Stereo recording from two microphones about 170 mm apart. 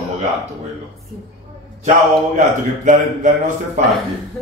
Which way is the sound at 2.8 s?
45° right (ahead or behind).